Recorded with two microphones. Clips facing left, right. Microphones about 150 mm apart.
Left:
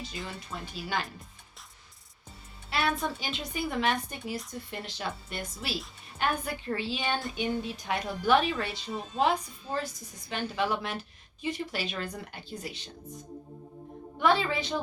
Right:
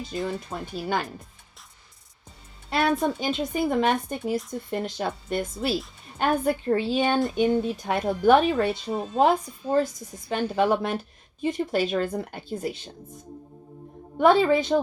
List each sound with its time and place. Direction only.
0.3 s a woman's voice: 50° right (ahead or behind)
2.6 s a woman's voice: 50° right (ahead or behind)
14.2 s a woman's voice: 45° right (ahead or behind)